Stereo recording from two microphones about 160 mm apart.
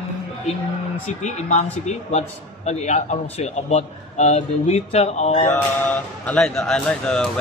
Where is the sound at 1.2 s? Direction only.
45° left (ahead or behind).